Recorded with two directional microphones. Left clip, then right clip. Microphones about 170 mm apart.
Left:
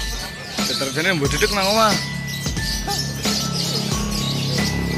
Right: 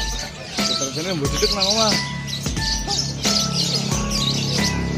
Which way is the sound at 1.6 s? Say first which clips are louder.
Left 3 dB; 15° left (ahead or behind).